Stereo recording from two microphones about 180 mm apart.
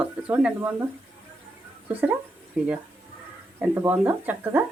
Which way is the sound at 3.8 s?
15° right (ahead or behind).